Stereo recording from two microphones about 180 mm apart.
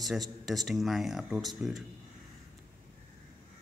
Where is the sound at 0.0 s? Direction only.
Centre (ahead or behind).